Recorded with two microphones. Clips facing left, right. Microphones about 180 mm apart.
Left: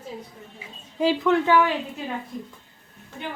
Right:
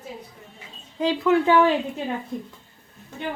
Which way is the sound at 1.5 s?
30° right (ahead or behind).